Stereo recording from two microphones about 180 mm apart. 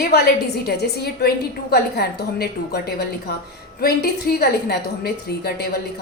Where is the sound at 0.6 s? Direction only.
65° left (ahead or behind).